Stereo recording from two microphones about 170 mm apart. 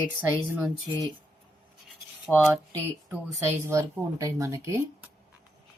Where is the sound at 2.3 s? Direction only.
10° left (ahead or behind).